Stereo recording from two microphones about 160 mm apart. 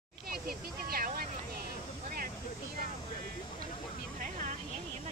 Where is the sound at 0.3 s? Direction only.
70° right (ahead or behind).